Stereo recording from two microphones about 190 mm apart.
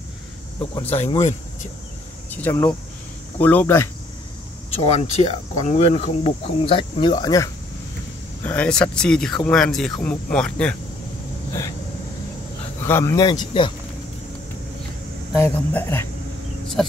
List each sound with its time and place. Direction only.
0.8 s speech: 35° left (ahead or behind)
2.3 s speech: 10° left (ahead or behind)
4.6 s speech: 35° left (ahead or behind)
8.5 s speech: 5° left (ahead or behind)
12.8 s speech: 15° left (ahead or behind)
15.4 s speech: 10° left (ahead or behind)